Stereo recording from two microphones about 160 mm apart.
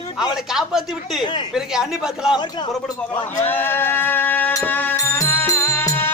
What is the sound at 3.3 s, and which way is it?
Music, 10° left (ahead or behind).